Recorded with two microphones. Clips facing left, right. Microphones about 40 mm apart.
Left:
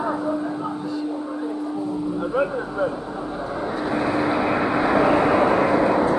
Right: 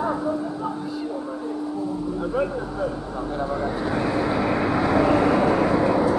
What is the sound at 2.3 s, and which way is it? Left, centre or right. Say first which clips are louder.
Speech: left 3 dB; centre.